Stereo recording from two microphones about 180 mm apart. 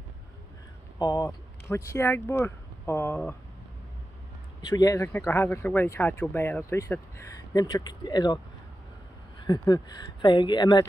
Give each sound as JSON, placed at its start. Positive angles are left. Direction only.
{"t": 0.9, "sound": "speech", "side_deg": 20}
{"t": 4.6, "sound": "speech", "side_deg": 20}
{"t": 9.5, "sound": "speech", "side_deg": 15}